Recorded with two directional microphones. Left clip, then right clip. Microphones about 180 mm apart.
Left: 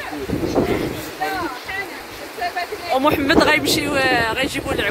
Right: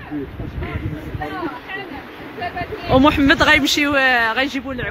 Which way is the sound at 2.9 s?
10° left (ahead or behind).